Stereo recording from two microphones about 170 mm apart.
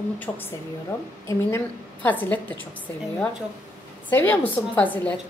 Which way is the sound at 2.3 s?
10° left (ahead or behind).